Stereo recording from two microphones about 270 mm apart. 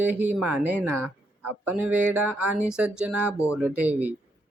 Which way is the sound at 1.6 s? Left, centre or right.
Centre.